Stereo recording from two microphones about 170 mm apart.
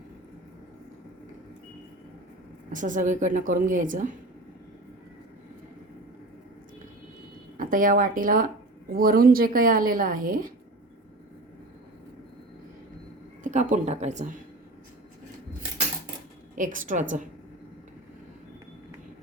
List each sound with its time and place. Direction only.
2.7 s a woman's voice: 50° right (ahead or behind)
7.5 s a woman's voice: 55° right (ahead or behind)
13.4 s speech: 45° right (ahead or behind)
16.6 s a woman's voice: 50° right (ahead or behind)